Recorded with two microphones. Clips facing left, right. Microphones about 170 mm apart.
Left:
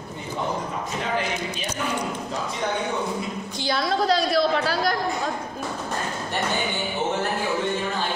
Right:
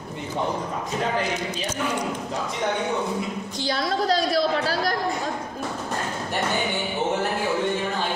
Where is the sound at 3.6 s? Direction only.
40° right (ahead or behind).